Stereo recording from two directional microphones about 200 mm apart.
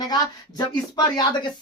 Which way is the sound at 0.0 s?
20° left (ahead or behind).